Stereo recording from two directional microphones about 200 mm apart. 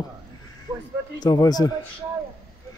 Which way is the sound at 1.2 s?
20° left (ahead or behind).